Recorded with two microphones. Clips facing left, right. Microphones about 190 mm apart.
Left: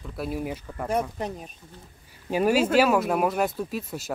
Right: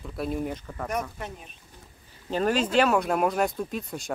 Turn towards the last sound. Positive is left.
turn(degrees=5)  # may be behind; listen again after turning